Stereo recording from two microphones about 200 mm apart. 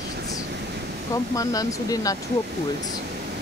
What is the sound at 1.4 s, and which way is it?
Speech, 15° left (ahead or behind).